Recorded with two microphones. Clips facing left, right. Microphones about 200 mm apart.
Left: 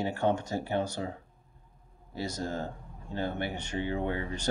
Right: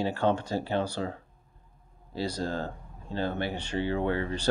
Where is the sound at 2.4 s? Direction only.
15° left (ahead or behind).